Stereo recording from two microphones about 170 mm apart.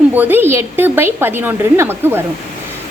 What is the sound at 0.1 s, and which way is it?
A woman's voice, 10° right (ahead or behind).